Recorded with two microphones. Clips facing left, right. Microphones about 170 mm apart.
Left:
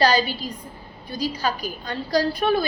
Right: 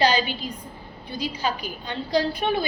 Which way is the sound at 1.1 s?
40° left (ahead or behind).